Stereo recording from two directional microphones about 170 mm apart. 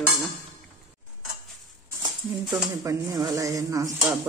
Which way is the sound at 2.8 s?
15° right (ahead or behind).